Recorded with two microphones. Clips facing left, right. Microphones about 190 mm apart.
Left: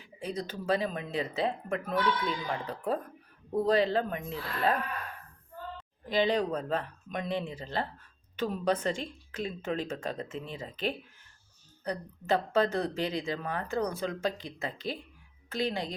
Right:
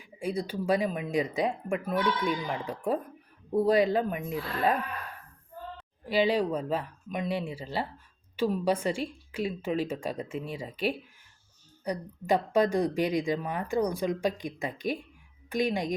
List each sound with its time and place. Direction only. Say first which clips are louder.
0.0 s speech: right 4 dB; 10° right (ahead or behind)
6.1 s speech: right 2 dB; 10° right (ahead or behind)